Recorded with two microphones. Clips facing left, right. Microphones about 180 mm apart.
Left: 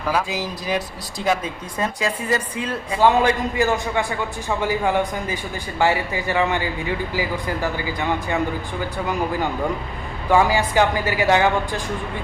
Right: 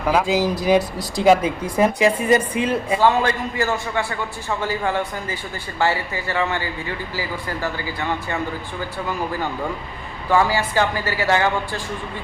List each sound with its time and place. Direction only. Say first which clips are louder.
0.1 s a woman's voice: right 5 dB; 25° right (ahead or behind)
1.8 s a woman's voice: right 7 dB; 20° right (ahead or behind)
3.0 s speech: left 4 dB; 15° left (ahead or behind)
10.2 s speech: left 1 dB; 15° left (ahead or behind)